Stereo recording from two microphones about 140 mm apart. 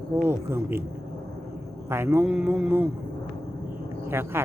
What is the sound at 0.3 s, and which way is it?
Speech, 15° right (ahead or behind).